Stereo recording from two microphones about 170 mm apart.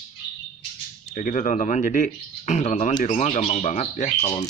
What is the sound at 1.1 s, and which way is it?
Speech, 50° left (ahead or behind).